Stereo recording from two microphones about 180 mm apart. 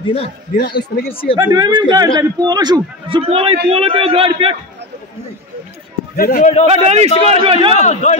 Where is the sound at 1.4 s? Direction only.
20° right (ahead or behind).